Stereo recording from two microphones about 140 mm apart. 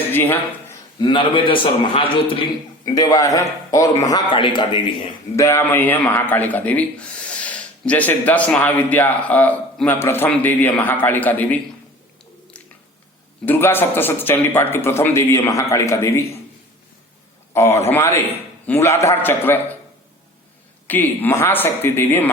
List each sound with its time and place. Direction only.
0.1 s speech: 15° left (ahead or behind)
0.9 s a man's voice: 35° left (ahead or behind)
2.8 s a man's voice: 25° left (ahead or behind)
5.4 s speech: 20° left (ahead or behind)
13.4 s speech: 15° left (ahead or behind)
17.5 s a man's voice: 20° left (ahead or behind)
20.8 s speech: 15° left (ahead or behind)